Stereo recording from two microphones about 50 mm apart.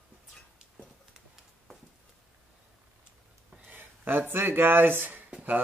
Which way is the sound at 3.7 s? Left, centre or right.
Right.